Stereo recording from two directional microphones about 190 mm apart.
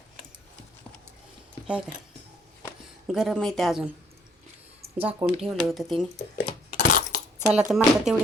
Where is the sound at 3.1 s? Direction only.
Centre (ahead or behind).